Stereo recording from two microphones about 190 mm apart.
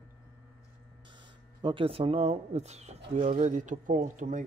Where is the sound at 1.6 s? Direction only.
25° right (ahead or behind).